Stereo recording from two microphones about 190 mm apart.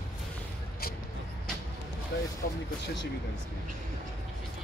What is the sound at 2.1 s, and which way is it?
Speech, 65° left (ahead or behind).